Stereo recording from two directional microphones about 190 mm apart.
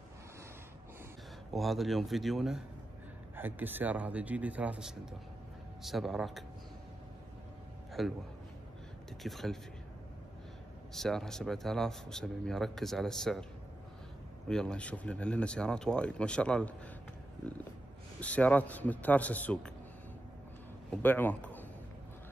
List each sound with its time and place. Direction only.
1.5 s a man's voice: centre (ahead or behind)
8.0 s speech: centre (ahead or behind)
9.2 s speech: centre (ahead or behind)
10.9 s speech: centre (ahead or behind)
14.5 s speech: 5° left (ahead or behind)
18.2 s a man's voice: 5° left (ahead or behind)
20.9 s a man's voice: 10° left (ahead or behind)